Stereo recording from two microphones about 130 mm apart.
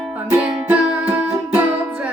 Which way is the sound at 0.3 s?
15° right (ahead or behind).